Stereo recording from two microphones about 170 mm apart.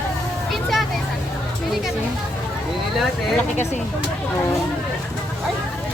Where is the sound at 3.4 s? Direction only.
10° left (ahead or behind).